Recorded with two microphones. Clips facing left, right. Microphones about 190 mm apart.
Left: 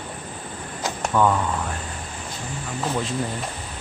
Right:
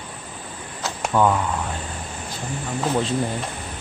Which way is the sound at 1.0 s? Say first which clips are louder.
Right 1 dB; 10° right (ahead or behind).